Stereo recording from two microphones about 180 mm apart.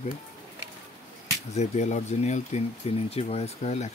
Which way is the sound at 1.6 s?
40° left (ahead or behind).